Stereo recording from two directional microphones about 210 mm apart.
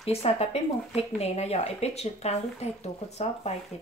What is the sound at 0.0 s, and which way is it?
Speech, 30° left (ahead or behind).